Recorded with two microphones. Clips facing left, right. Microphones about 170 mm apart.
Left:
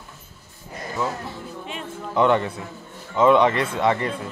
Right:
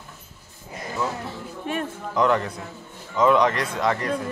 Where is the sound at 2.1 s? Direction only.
5° left (ahead or behind).